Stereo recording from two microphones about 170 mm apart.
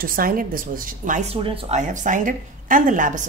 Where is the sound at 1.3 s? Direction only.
30° right (ahead or behind).